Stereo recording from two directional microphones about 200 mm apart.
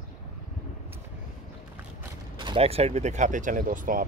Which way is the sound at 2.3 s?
25° right (ahead or behind).